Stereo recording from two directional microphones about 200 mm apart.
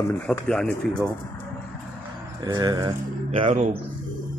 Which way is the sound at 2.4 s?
20° right (ahead or behind).